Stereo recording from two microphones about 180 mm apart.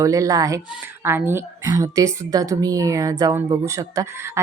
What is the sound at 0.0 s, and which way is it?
Speech, 20° right (ahead or behind).